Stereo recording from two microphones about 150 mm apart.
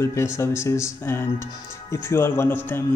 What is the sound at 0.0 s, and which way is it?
Speech, 20° left (ahead or behind).